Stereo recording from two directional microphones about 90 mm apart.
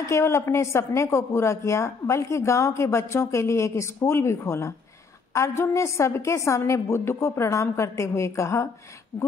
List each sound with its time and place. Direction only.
0.0 s a woman's voice: 30° left (ahead or behind)